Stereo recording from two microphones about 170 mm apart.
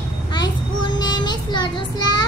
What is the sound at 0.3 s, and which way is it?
Child singing, 25° left (ahead or behind).